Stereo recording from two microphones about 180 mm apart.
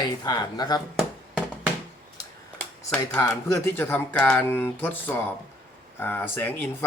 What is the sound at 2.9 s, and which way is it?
Speech, 5° left (ahead or behind).